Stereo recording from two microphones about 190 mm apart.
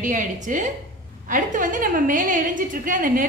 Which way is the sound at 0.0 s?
45° right (ahead or behind).